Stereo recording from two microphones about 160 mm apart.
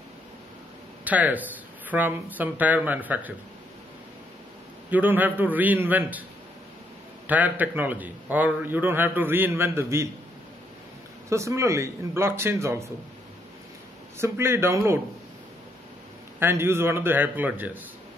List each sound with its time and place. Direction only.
1.0 s a man's voice: 10° right (ahead or behind)
4.9 s a man's voice: 10° right (ahead or behind)
7.2 s a man's voice: 10° right (ahead or behind)
11.2 s a man's voice: 20° right (ahead or behind)
14.1 s a man's voice: 15° right (ahead or behind)
16.3 s a man's voice: 15° right (ahead or behind)